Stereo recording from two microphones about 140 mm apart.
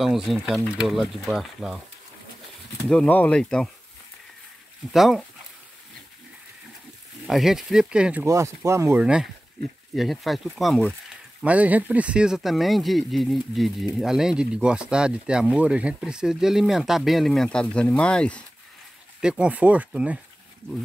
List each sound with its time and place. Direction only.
0.0 s speech: centre (ahead or behind)
2.9 s speech: 10° left (ahead or behind)
4.9 s speech: centre (ahead or behind)
7.2 s speech: centre (ahead or behind)
8.3 s speech: 20° right (ahead or behind)
9.0 s speech: 5° right (ahead or behind)
11.4 s speech: 10° right (ahead or behind); by 18.4 s 5° left (ahead or behind)
19.2 s speech: 5° right (ahead or behind)